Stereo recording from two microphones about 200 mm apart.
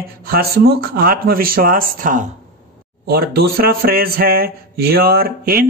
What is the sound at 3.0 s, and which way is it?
Speech, 50° right (ahead or behind).